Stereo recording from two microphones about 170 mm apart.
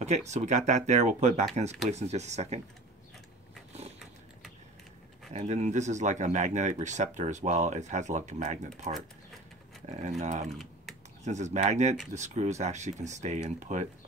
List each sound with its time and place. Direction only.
0.0 s speech: 40° right (ahead or behind)
5.3 s speech: 45° right (ahead or behind)
10.5 s typing: centre (ahead or behind)
11.2 s speech: 45° right (ahead or behind)